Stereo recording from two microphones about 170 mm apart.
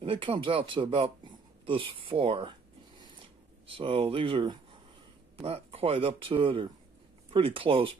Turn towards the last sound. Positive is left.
turn(degrees=-30)  # may be behind; listen again after turning